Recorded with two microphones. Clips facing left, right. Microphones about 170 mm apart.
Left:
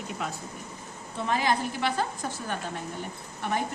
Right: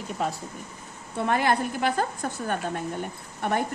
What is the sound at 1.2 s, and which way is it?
A woman's voice, 55° right (ahead or behind).